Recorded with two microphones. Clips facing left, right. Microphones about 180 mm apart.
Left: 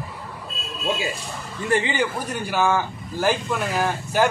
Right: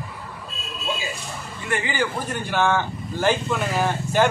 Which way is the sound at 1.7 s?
20° left (ahead or behind).